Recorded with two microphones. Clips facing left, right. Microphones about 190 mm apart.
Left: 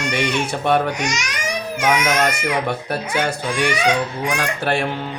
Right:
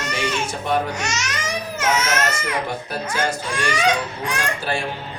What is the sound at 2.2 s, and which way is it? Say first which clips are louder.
Speech: left 4 dB; 65° left (ahead or behind).